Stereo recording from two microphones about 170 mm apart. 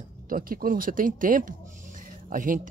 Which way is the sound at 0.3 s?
55° right (ahead or behind).